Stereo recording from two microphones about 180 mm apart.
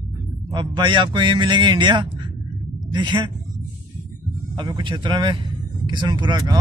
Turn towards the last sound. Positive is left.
turn(degrees=-25)  # may be behind; listen again after turning